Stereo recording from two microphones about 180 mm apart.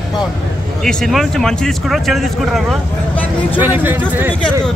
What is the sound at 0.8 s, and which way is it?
Speech, 5° left (ahead or behind).